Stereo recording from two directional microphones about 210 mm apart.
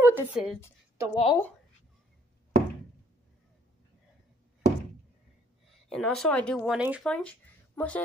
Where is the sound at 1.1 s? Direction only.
20° left (ahead or behind).